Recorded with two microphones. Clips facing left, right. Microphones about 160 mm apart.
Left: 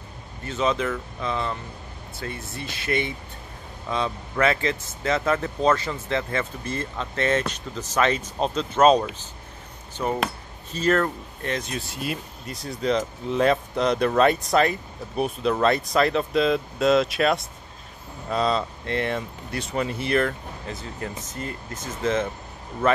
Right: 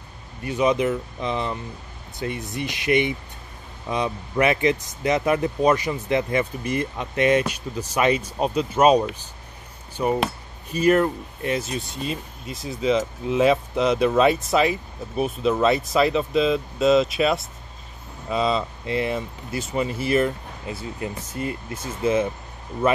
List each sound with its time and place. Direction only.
0.4 s speech: 15° right (ahead or behind)